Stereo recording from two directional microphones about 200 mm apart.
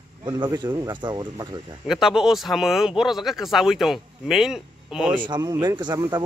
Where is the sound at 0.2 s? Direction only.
20° right (ahead or behind).